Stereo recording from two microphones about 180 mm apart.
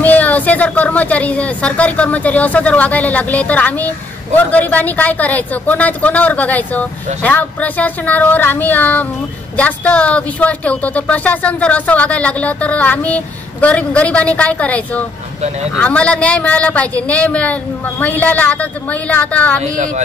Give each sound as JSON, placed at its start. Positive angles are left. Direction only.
{"t": 0.0, "sound": "speech", "side_deg": 10}
{"t": 19.6, "sound": "speech", "side_deg": -45}